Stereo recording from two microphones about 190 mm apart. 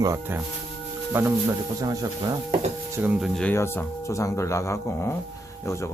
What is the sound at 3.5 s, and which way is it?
Speech, 10° left (ahead or behind).